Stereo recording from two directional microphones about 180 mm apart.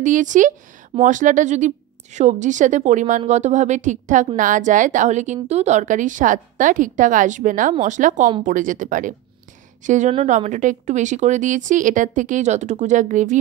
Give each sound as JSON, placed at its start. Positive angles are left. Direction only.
{"t": 0.0, "sound": "speech", "side_deg": -45}